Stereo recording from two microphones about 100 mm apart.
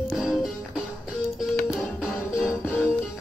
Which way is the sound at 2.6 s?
15° left (ahead or behind).